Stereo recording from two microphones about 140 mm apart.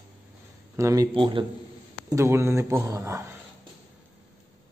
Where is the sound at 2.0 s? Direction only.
20° right (ahead or behind).